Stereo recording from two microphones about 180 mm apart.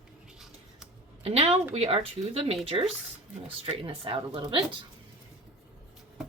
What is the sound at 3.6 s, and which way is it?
Speech, 30° right (ahead or behind).